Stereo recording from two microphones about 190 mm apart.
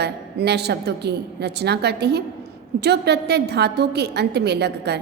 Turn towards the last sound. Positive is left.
turn(degrees=-60)  # may be behind; listen again after turning